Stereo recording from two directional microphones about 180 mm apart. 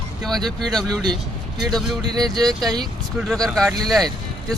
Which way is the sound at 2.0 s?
20° right (ahead or behind).